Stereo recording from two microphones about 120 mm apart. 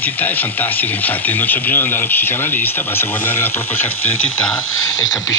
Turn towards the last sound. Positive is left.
turn(degrees=20)  # may be behind; listen again after turning